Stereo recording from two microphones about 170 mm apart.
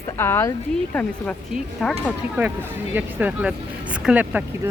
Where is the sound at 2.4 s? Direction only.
10° right (ahead or behind).